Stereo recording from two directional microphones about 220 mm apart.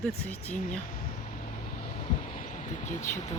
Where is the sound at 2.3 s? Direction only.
35° left (ahead or behind).